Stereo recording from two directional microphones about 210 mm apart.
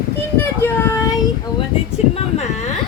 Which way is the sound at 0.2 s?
10° left (ahead or behind).